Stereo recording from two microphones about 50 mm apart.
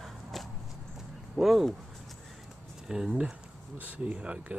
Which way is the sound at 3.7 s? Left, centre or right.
Right.